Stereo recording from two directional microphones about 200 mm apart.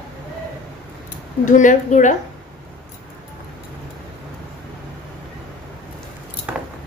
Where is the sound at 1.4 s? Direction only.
40° left (ahead or behind).